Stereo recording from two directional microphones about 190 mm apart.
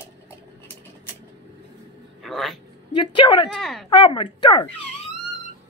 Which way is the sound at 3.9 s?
25° left (ahead or behind).